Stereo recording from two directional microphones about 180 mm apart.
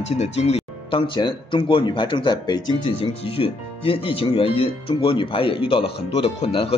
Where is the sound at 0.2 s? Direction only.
35° left (ahead or behind).